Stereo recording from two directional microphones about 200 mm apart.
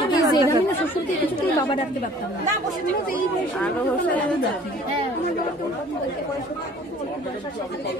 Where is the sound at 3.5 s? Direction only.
5° left (ahead or behind).